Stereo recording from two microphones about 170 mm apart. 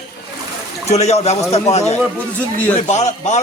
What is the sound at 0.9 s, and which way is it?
Speech, 40° left (ahead or behind).